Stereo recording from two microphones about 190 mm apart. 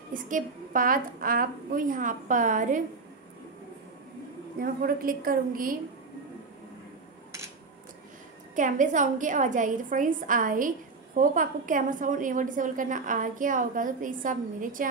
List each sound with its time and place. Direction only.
0.1 s a woman's voice: 45° right (ahead or behind)
4.6 s a woman's voice: 50° right (ahead or behind)
8.5 s a woman's voice: 40° right (ahead or behind)